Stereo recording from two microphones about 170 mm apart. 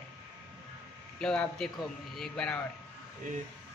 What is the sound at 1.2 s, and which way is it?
Speech, 5° left (ahead or behind).